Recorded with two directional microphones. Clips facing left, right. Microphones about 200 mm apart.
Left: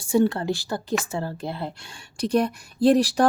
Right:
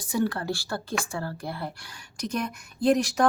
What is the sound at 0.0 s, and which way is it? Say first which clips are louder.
A woman's voice: left 6 dB; 25° left (ahead or behind).